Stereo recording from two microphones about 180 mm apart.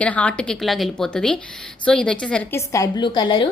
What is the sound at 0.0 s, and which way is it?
A woman's voice, 5° left (ahead or behind).